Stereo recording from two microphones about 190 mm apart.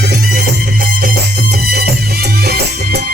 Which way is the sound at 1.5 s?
55° right (ahead or behind).